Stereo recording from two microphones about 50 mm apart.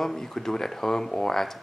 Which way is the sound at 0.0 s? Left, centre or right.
Centre.